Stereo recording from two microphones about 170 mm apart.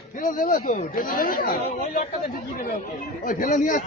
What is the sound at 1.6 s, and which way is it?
Speech, 35° left (ahead or behind).